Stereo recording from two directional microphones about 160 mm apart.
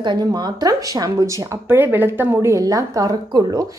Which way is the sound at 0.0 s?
25° right (ahead or behind).